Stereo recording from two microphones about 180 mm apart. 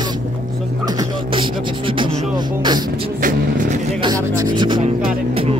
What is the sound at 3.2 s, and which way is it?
Vehicle, 45° right (ahead or behind).